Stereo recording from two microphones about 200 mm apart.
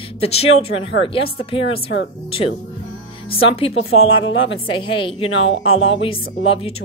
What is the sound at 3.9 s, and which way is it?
Speech, 90° left.